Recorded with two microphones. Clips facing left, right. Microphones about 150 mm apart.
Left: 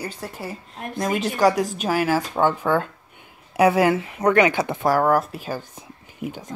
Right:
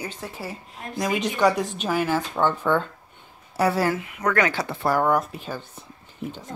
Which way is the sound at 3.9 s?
30° left (ahead or behind).